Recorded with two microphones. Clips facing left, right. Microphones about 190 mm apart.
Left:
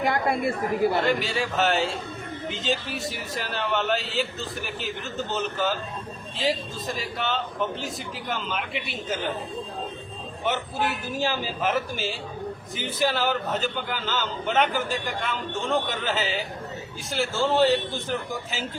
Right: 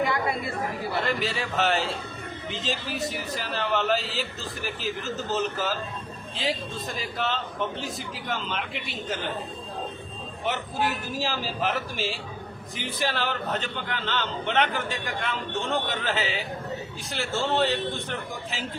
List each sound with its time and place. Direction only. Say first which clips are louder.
0.0 s speech: left 3 dB; 50° left (ahead or behind)
0.9 s a man's voice: left 3 dB; centre (ahead or behind)
10.4 s a man's voice: left 1 dB; centre (ahead or behind)